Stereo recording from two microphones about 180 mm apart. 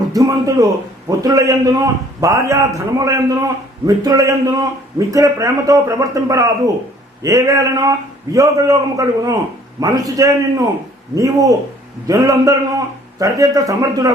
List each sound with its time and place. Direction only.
0.1 s a man's voice: 20° right (ahead or behind)